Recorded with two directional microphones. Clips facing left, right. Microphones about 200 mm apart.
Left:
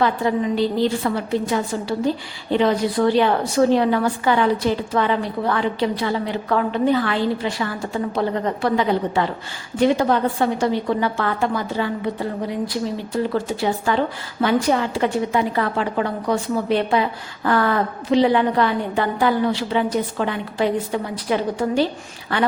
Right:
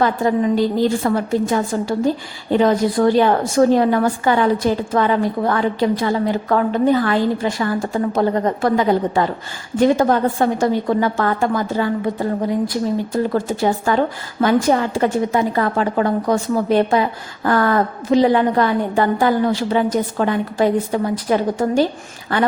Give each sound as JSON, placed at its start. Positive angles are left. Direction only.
{"t": 0.0, "sound": "a woman's voice", "side_deg": -45}